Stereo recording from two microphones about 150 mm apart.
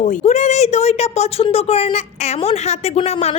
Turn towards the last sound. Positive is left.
turn(degrees=45)  # may be behind; listen again after turning